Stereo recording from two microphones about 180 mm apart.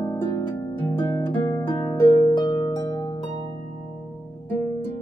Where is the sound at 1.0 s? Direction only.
10° left (ahead or behind).